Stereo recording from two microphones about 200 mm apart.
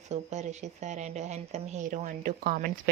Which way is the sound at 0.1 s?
35° right (ahead or behind).